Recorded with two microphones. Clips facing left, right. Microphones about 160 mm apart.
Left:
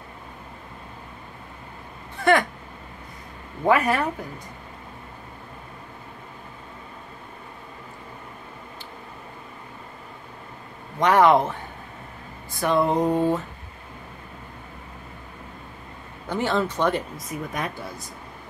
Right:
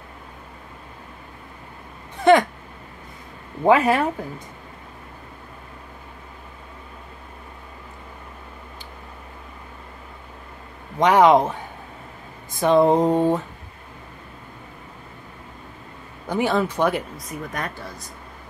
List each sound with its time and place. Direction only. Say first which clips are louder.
3.6 s mantra: right 4 dB; 25° right (ahead or behind)
11.0 s speech: right 2 dB; 15° right (ahead or behind)
12.5 s mantra: right 5 dB; 20° right (ahead or behind)
16.3 s speech: right 3 dB; 10° right (ahead or behind)
17.3 s speech: left 1 dB; centre (ahead or behind)